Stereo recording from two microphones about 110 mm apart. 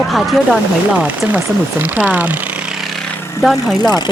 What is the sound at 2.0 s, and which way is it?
Speech, 15° right (ahead or behind).